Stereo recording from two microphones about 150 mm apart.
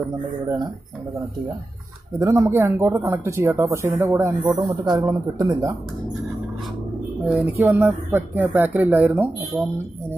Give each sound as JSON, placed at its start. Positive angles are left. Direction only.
{"t": 2.1, "sound": "speech", "side_deg": -20}
{"t": 4.4, "sound": "speech", "side_deg": -30}
{"t": 7.2, "sound": "speech", "side_deg": -10}